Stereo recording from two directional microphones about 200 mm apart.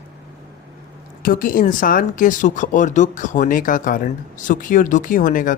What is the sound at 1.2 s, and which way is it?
Speech, 45° left (ahead or behind).